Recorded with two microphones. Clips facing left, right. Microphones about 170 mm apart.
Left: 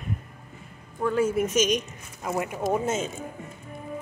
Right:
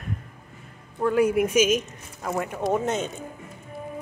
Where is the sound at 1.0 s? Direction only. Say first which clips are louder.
Right 3 dB; 10° right (ahead or behind).